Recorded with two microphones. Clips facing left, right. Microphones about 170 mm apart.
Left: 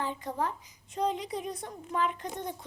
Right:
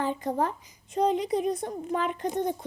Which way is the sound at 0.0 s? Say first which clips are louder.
Right 5 dB; 45° right (ahead or behind).